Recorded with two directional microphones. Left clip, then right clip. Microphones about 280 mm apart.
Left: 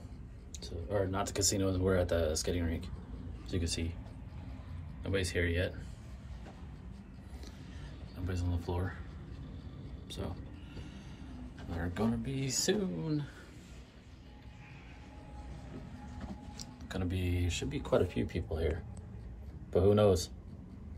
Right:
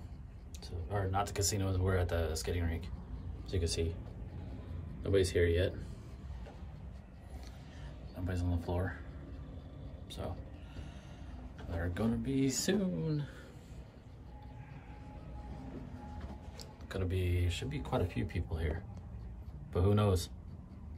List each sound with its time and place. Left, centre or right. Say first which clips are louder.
0.6 s a sound: left 5 dB; centre
1.3 s speech: left 4 dB; centre
3.4 s speech: right 2 dB; centre
5.0 s speech: right 4 dB; left
8.2 s speech: right 1 dB; right
10.0 s vehicle: even; centre
11.7 s speech: left 1 dB; centre
16.9 s speech: even; centre